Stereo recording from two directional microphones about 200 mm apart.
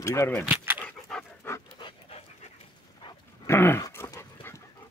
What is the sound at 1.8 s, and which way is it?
Pant, 20° left (ahead or behind).